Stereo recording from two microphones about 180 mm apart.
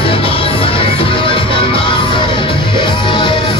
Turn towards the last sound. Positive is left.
turn(degrees=25)  # may be behind; listen again after turning